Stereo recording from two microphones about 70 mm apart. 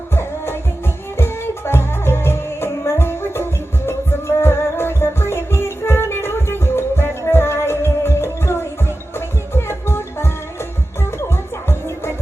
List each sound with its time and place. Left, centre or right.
0.1 s music: left
11.3 s music: left